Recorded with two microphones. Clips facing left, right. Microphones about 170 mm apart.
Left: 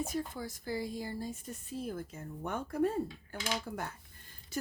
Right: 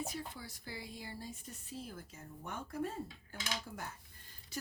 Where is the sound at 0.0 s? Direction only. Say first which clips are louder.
Left 7 dB; 45° left (ahead or behind).